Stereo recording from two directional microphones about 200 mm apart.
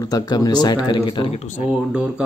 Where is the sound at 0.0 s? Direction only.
20° left (ahead or behind); by 1.7 s 35° left (ahead or behind).